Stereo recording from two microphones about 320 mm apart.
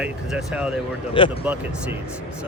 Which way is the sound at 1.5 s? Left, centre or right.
Centre.